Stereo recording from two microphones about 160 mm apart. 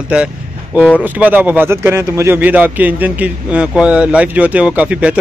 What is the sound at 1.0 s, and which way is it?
Speech, 10° right (ahead or behind).